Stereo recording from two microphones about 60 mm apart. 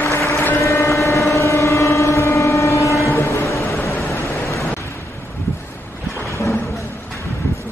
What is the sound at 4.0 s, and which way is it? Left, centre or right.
Vehicle, left.